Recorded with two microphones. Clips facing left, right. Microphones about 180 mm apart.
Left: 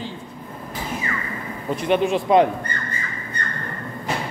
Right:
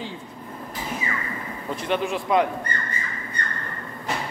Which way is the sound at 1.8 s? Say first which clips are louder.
Left 6 dB; 20° left (ahead or behind).